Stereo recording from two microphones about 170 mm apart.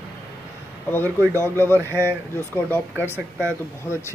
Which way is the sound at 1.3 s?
15° left (ahead or behind).